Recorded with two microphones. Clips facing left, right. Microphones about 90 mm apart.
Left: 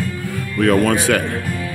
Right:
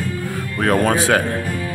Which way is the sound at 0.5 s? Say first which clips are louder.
Left 2 dB; 30° right (ahead or behind).